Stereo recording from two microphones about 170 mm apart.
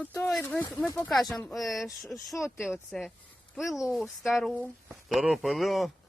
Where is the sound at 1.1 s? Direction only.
Centre (ahead or behind).